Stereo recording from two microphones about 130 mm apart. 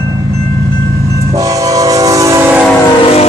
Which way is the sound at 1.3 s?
25° right (ahead or behind).